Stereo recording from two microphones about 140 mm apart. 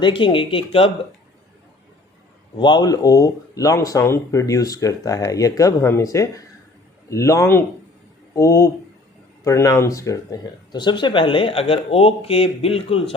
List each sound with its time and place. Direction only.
0.0 s speech: 35° left (ahead or behind)
2.6 s speech: 30° left (ahead or behind)